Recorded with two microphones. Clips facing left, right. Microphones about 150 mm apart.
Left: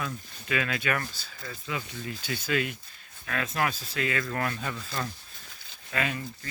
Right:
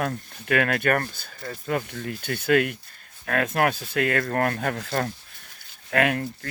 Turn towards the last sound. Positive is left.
turn(degrees=-65)  # may be behind; listen again after turning